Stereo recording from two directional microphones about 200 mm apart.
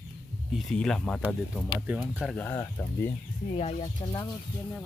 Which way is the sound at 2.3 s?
10° left (ahead or behind).